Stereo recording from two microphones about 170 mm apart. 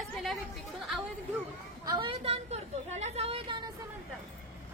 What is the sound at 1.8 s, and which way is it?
A woman's voice, 30° right (ahead or behind).